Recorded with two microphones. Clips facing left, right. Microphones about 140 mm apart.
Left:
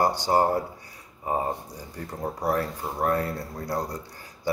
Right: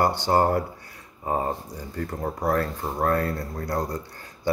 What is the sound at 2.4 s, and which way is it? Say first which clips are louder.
Speech: right 2 dB; 15° left (ahead or behind).